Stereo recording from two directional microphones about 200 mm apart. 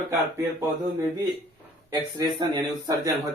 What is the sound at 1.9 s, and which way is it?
Speech, 20° right (ahead or behind).